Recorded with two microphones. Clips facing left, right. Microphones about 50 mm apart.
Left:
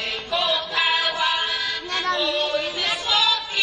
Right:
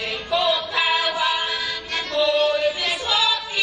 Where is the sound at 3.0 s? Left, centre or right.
Centre.